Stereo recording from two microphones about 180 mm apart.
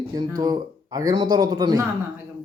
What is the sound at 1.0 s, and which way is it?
Speech, 20° right (ahead or behind).